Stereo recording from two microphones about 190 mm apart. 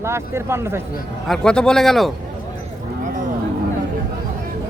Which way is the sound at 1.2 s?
5° left (ahead or behind).